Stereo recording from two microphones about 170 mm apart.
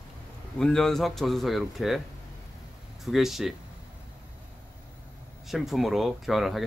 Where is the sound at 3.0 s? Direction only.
Centre (ahead or behind).